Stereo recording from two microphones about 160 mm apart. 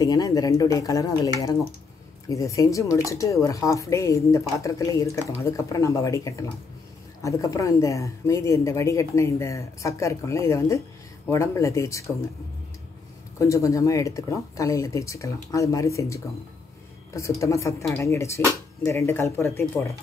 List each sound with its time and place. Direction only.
0.0 s a woman's voice: 20° left (ahead or behind)
13.4 s a woman's voice: 20° left (ahead or behind)